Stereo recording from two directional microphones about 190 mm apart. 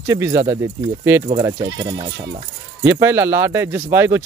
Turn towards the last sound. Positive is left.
turn(degrees=-15)  # may be behind; listen again after turning